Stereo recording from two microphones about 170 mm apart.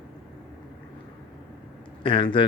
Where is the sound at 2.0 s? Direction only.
30° left (ahead or behind).